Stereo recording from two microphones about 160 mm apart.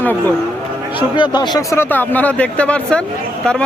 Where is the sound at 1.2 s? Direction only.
25° left (ahead or behind).